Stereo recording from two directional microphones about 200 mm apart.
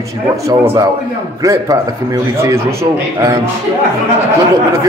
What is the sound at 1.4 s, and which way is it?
A man's voice, 15° right (ahead or behind).